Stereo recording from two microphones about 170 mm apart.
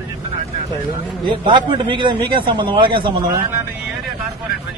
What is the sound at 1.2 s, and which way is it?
A man's voice, 30° right (ahead or behind).